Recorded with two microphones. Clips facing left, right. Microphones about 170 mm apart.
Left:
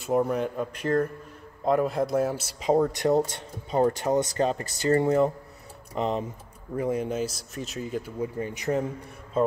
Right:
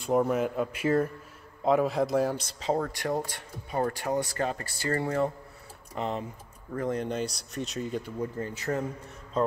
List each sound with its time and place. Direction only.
0.0 s speech: centre (ahead or behind)
8.4 s a man's voice: 15° left (ahead or behind)